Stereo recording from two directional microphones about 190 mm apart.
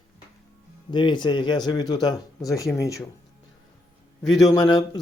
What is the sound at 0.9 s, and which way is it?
Speech, 25° left (ahead or behind).